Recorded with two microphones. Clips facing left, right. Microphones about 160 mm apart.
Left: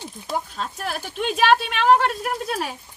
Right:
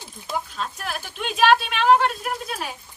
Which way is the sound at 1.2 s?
50° left (ahead or behind).